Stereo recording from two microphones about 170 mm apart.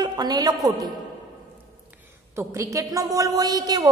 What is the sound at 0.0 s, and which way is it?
Speech, 25° right (ahead or behind).